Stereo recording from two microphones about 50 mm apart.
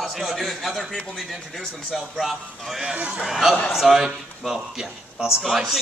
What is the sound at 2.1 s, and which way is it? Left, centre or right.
Speech, centre.